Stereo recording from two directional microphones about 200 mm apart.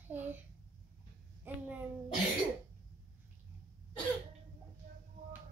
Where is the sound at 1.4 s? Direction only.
10° right (ahead or behind).